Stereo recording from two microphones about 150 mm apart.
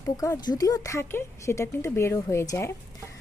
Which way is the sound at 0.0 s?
25° left (ahead or behind).